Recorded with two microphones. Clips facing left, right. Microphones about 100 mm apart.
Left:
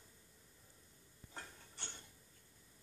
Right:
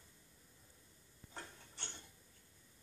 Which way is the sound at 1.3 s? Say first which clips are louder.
Right 1 dB; 5° left (ahead or behind).